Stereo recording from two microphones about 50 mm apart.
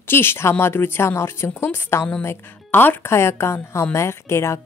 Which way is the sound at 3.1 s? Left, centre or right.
Left.